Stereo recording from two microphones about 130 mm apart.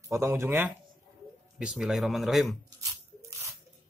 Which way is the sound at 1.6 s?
5° right (ahead or behind).